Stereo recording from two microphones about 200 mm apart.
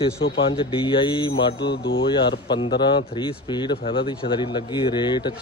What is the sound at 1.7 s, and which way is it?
Speech, 65° left (ahead or behind).